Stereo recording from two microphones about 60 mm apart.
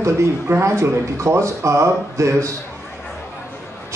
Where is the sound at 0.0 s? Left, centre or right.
Right.